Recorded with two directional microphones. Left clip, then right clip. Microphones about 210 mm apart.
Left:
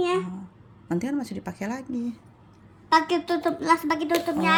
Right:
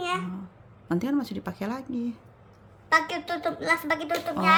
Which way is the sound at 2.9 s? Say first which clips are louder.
Left 3 dB; 30° right (ahead or behind).